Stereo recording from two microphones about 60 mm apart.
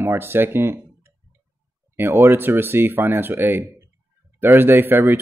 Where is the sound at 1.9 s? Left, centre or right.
Right.